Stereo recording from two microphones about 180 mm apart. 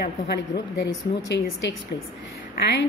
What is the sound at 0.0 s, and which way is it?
A woman's voice, 65° left (ahead or behind).